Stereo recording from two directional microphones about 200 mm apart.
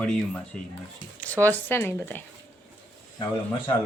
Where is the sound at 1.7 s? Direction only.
10° left (ahead or behind).